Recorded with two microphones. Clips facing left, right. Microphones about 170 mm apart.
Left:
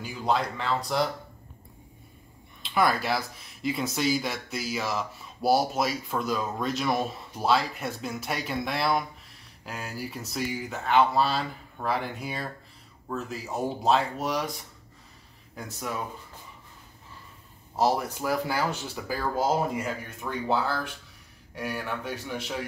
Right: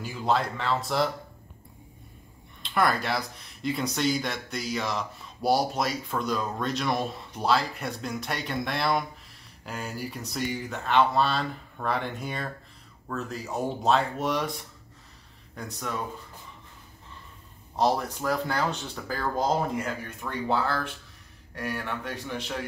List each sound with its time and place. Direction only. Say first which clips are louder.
0.0 s speech: right 1 dB; centre (ahead or behind)
2.6 s speech: left 1 dB; centre (ahead or behind)
17.7 s speech: even; 5° left (ahead or behind)